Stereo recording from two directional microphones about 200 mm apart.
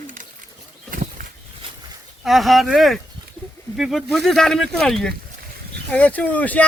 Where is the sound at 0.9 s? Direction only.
45° right (ahead or behind).